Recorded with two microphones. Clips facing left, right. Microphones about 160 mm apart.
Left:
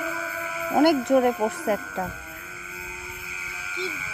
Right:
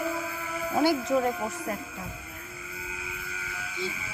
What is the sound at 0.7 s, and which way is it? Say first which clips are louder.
Speech: left 6 dB; 55° left (ahead or behind).